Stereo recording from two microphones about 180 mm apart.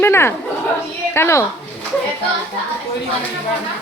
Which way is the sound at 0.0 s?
15° left (ahead or behind).